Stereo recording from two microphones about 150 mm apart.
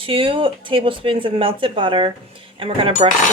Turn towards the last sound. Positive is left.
turn(degrees=-40)  # may be behind; listen again after turning